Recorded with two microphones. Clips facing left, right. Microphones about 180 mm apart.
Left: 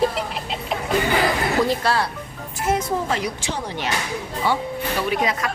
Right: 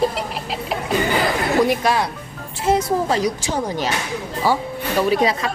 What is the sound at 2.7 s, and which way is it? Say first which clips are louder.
A woman's voice: right 4 dB; 35° right (ahead or behind).